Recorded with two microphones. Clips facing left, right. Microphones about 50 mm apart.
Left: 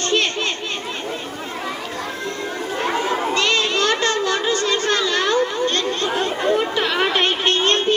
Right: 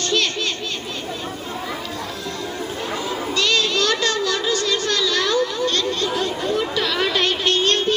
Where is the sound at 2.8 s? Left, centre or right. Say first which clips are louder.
Left 7 dB; left.